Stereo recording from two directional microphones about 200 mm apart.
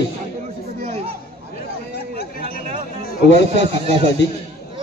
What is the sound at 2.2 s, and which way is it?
Speech, 50° left (ahead or behind).